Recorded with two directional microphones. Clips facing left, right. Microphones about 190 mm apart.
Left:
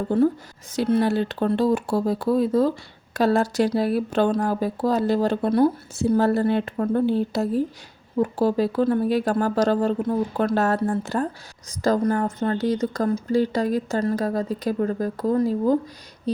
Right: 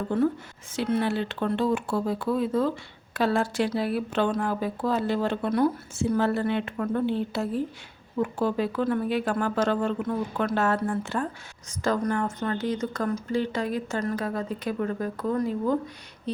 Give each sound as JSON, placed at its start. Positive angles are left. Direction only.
{"t": 0.1, "sound": "speech", "side_deg": 35}